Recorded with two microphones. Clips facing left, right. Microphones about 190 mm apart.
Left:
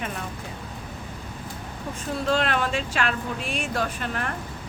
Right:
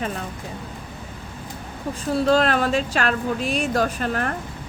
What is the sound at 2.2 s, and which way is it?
Speech, 40° right (ahead or behind).